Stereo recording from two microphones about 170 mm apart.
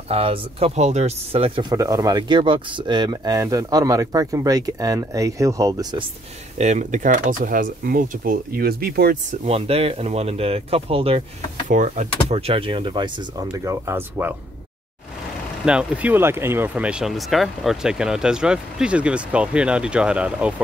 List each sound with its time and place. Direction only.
0.1 s speech: 35° right (ahead or behind)
6.6 s speech: 45° right (ahead or behind); by 9.2 s 65° right (ahead or behind)
9.3 s speech: 40° right (ahead or behind)
11.7 s speech: 45° right (ahead or behind); by 14.3 s 10° right (ahead or behind)
15.6 s speech: 5° right (ahead or behind)